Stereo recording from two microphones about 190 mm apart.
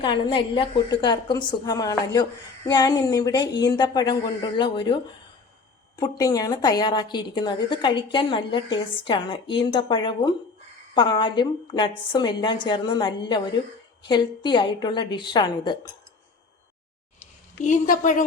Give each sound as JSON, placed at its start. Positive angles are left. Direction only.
{"t": 0.0, "sound": "a woman's voice", "side_deg": 25}
{"t": 6.0, "sound": "a woman's voice", "side_deg": 20}
{"t": 17.6, "sound": "a woman's voice", "side_deg": 40}